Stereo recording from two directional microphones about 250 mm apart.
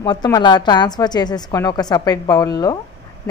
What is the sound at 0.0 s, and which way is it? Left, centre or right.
A woman's voice, centre.